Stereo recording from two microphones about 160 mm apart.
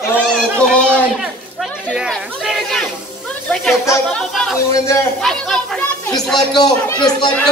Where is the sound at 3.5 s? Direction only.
5° left (ahead or behind).